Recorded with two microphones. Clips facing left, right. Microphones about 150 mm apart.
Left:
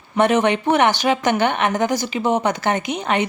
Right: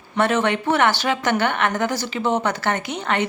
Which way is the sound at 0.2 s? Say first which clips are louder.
Left 3 dB; 15° left (ahead or behind).